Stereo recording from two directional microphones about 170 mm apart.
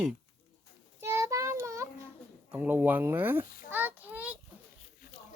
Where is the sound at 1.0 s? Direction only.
15° right (ahead or behind).